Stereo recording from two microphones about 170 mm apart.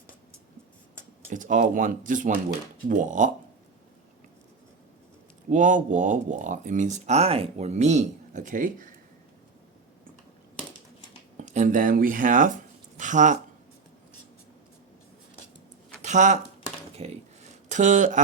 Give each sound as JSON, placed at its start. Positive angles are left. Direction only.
{"t": 1.3, "sound": "speech", "side_deg": -50}
{"t": 5.5, "sound": "speech", "side_deg": -50}
{"t": 11.4, "sound": "speech", "side_deg": -45}
{"t": 16.0, "sound": "a sound", "side_deg": -45}